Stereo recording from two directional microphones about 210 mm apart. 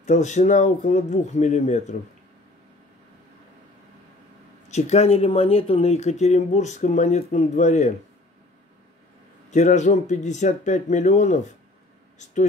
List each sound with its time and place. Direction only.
0.0 s speech: 35° left (ahead or behind)
4.6 s speech: 30° left (ahead or behind)
9.5 s speech: 35° left (ahead or behind)